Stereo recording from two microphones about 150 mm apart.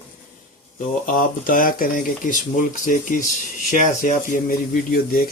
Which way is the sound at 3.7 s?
55° left (ahead or behind).